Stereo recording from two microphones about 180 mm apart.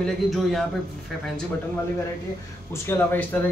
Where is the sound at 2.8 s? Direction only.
10° left (ahead or behind).